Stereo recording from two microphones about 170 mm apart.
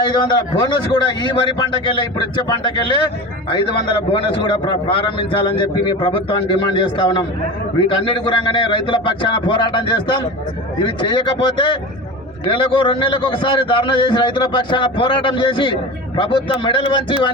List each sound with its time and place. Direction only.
0.0 s a man's voice: 25° left (ahead or behind)